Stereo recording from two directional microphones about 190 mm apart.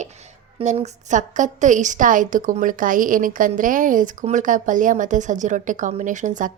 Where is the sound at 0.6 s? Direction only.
40° right (ahead or behind).